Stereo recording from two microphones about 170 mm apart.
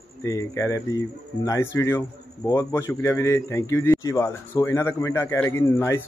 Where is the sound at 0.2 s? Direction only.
20° left (ahead or behind).